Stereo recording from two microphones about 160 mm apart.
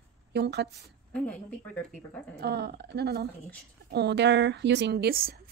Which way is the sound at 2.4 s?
90° right.